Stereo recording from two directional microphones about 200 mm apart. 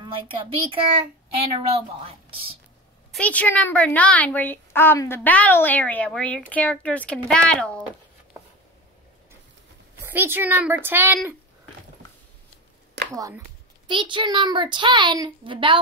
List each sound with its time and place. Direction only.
0.0 s a child's voice: 25° right (ahead or behind)
3.1 s a woman's voice: 5° left (ahead or behind)
10.0 s a woman's voice: 10° right (ahead or behind)
13.1 s a woman's voice: 15° right (ahead or behind)